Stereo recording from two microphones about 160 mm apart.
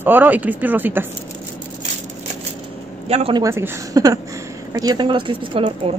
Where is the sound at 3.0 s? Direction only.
40° right (ahead or behind).